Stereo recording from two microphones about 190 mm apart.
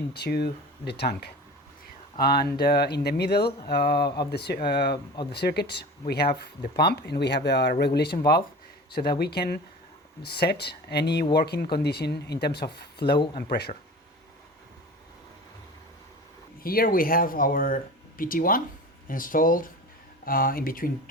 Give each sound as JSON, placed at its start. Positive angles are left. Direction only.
{"t": 0.1, "sound": "speech", "side_deg": 55}
{"t": 4.0, "sound": "speech", "side_deg": 25}
{"t": 4.3, "sound": "speech", "side_deg": 60}
{"t": 16.6, "sound": "speech", "side_deg": 50}